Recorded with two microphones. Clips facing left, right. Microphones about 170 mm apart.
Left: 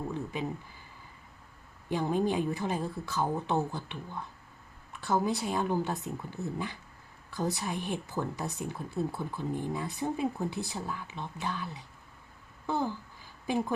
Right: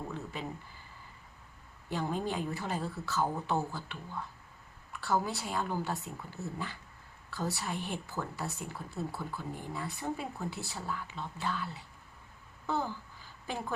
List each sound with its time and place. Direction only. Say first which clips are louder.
1.9 s speech: left 5 dB; 15° left (ahead or behind)